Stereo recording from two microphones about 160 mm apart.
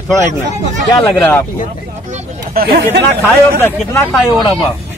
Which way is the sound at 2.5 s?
80° right.